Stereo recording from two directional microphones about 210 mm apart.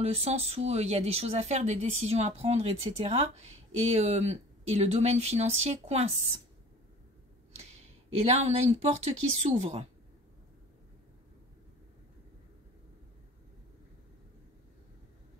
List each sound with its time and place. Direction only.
0.0 s speech: 30° right (ahead or behind)
8.1 s speech: 30° right (ahead or behind)